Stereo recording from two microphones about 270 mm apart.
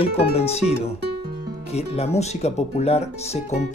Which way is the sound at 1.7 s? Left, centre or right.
Left.